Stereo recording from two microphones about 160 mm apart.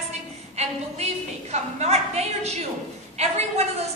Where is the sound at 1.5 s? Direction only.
40° right (ahead or behind).